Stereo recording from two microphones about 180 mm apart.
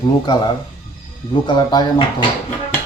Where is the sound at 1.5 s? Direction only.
25° left (ahead or behind).